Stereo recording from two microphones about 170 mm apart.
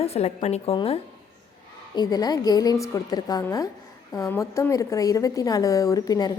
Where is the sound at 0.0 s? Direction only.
35° left (ahead or behind).